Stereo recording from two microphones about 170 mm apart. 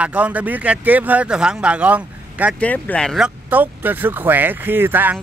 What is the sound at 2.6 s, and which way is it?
Speech, 10° left (ahead or behind).